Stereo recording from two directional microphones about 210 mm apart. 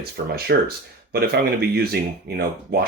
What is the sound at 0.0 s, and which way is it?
Speech, 45° right (ahead or behind).